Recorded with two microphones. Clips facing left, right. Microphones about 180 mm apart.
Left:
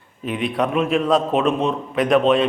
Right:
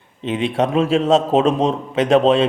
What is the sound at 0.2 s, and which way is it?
A man's voice, 25° right (ahead or behind).